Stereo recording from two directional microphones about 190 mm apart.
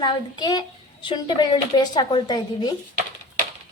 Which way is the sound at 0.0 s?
25° left (ahead or behind).